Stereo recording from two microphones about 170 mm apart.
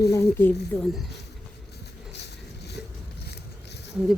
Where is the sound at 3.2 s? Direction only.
75° left (ahead or behind).